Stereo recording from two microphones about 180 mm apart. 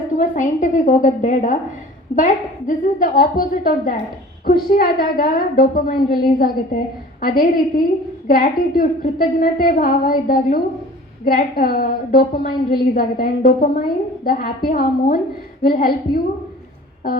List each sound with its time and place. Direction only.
0.2 s a woman's voice: 45° left (ahead or behind)